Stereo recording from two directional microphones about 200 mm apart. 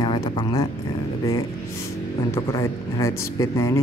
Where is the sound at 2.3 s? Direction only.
15° left (ahead or behind).